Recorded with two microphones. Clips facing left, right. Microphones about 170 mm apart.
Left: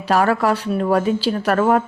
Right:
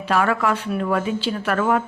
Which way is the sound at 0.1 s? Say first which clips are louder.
Left 3 dB; 40° left (ahead or behind).